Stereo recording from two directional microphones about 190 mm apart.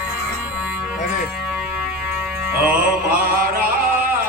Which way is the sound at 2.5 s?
10° right (ahead or behind).